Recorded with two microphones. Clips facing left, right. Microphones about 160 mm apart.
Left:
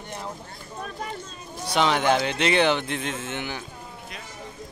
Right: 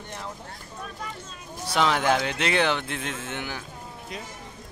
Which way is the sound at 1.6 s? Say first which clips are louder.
Left 1 dB; centre (ahead or behind).